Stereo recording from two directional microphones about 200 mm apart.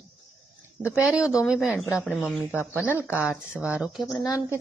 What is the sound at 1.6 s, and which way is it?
Speech, 10° left (ahead or behind).